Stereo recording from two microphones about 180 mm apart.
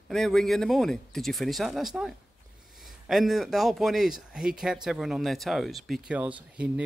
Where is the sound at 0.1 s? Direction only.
Centre (ahead or behind).